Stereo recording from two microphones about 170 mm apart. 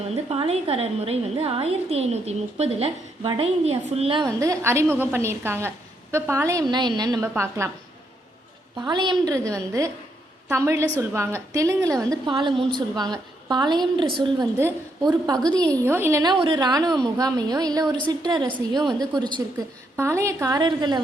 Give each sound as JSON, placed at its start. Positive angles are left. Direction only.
{"t": 0.1, "sound": "a woman's voice", "side_deg": -35}
{"t": 8.9, "sound": "a woman's voice", "side_deg": -25}
{"t": 10.5, "sound": "a woman's voice", "side_deg": -15}
{"t": 16.3, "sound": "a woman's voice", "side_deg": -25}